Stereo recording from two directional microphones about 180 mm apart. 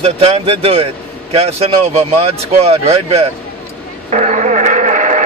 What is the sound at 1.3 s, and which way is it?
Speech, 35° right (ahead or behind).